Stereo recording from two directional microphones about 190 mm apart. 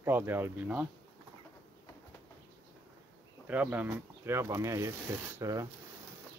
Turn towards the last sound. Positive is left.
turn(degrees=-15)  # may be behind; listen again after turning